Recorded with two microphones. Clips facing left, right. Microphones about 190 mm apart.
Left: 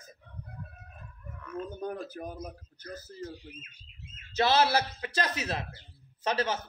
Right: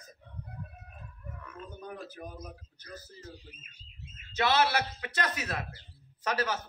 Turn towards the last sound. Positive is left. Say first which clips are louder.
# left 2 dB
turn(degrees=25)  # may be behind; listen again after turning